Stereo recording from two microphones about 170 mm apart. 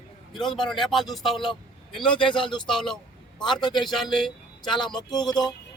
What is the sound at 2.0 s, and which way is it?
Speech, 30° left (ahead or behind).